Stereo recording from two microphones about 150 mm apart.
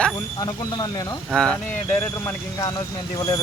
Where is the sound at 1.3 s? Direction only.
5° left (ahead or behind).